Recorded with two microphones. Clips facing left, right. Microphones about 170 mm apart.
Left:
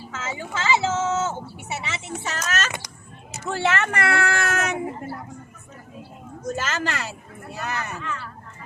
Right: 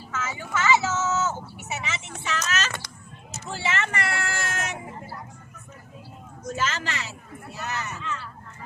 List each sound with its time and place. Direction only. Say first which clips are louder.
0.1 s vehicle: right 1 dB; 25° left (ahead or behind)
2.2 s vehicle: even; 45° left (ahead or behind)
3.3 s speech: left 6 dB; 60° left (ahead or behind)
6.6 s speech: even; 45° left (ahead or behind)